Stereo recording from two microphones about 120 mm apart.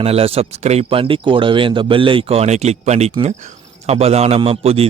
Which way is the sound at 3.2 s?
75° right (ahead or behind).